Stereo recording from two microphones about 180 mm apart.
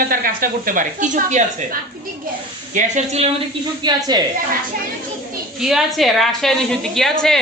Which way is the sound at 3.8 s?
25° right (ahead or behind).